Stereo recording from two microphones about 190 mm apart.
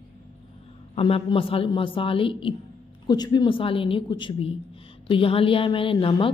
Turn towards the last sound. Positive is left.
turn(degrees=25)  # may be behind; listen again after turning